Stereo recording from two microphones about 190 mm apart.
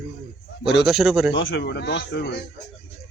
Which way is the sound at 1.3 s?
75° left (ahead or behind).